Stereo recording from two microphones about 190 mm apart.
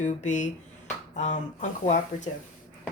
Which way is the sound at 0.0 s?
40° left (ahead or behind).